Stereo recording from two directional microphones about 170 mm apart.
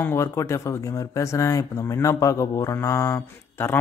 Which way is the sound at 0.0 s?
15° left (ahead or behind).